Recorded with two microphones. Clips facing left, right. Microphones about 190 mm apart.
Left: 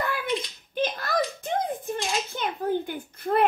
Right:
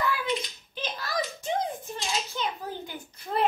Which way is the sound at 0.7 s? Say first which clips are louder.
Left 6 dB; 55° left (ahead or behind).